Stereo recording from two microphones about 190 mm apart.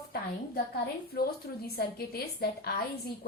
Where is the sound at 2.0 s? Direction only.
55° left (ahead or behind).